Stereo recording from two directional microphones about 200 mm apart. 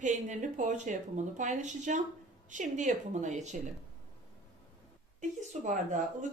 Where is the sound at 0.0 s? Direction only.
40° right (ahead or behind).